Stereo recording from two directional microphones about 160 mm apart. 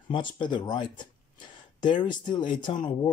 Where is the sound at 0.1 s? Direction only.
30° left (ahead or behind).